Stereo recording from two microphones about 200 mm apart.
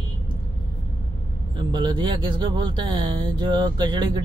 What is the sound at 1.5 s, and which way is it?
Speech, 25° right (ahead or behind).